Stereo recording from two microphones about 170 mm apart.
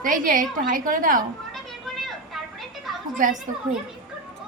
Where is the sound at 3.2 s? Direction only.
50° right (ahead or behind).